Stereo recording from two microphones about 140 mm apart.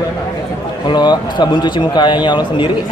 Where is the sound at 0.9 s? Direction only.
35° left (ahead or behind).